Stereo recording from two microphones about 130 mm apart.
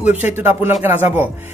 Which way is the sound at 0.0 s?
15° right (ahead or behind).